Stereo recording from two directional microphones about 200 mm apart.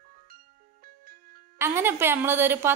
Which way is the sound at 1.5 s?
10° right (ahead or behind).